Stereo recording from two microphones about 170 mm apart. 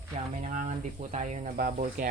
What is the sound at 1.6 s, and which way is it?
Speech, 55° right (ahead or behind).